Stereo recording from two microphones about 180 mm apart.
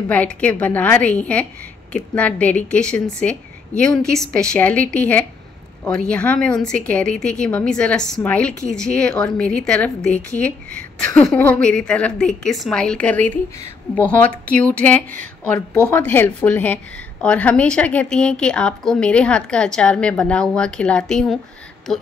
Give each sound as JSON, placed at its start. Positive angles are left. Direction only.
{"t": 0.1, "sound": "a woman's voice", "side_deg": 10}
{"t": 11.2, "sound": "a woman's voice", "side_deg": 10}